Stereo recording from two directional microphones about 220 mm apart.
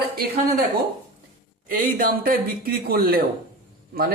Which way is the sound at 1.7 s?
40° right (ahead or behind).